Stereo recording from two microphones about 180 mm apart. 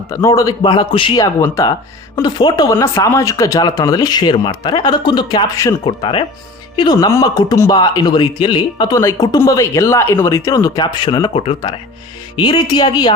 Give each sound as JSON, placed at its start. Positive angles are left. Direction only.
{"t": 0.1, "sound": "speech", "side_deg": 20}